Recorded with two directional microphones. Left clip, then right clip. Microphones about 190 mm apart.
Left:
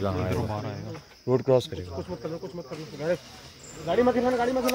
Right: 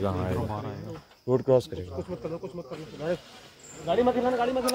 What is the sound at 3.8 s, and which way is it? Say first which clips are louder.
Speech: left 1 dB; 40° left (ahead or behind).